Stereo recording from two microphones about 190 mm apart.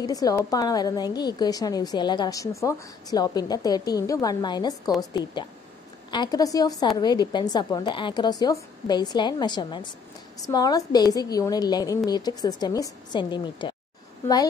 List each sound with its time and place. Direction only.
0.0 s a woman's voice: 20° left (ahead or behind)
6.0 s a woman's voice: 25° left (ahead or behind)